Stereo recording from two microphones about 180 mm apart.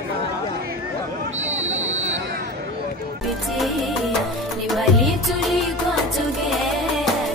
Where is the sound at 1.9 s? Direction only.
40° right (ahead or behind).